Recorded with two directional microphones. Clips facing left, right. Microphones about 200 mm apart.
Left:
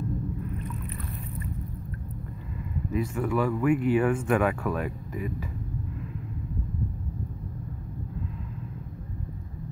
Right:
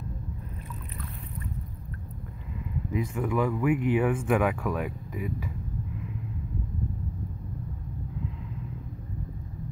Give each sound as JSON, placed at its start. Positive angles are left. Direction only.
{"t": 2.9, "sound": "speech", "side_deg": -15}